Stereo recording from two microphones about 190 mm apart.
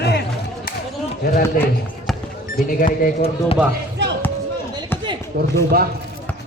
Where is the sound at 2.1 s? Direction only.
Centre (ahead or behind).